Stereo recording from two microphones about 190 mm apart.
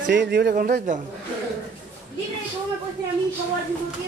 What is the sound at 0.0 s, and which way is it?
A man's voice, 65° right (ahead or behind).